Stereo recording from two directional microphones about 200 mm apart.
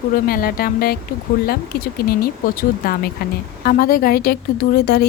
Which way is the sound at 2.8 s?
50° left (ahead or behind).